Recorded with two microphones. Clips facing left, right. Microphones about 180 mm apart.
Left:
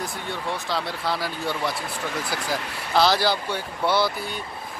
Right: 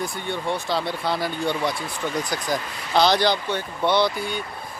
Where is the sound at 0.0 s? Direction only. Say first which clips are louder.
Right 3 dB; centre (ahead or behind).